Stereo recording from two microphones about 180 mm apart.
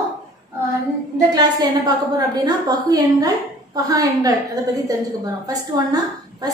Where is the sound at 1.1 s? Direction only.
20° right (ahead or behind).